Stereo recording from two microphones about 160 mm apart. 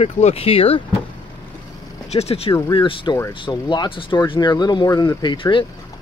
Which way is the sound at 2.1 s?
40° left (ahead or behind).